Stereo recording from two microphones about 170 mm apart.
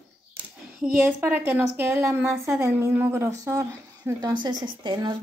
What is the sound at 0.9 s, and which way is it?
Speech, 10° right (ahead or behind).